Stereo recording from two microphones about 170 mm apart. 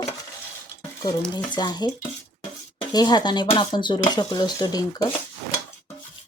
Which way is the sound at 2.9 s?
25° left (ahead or behind).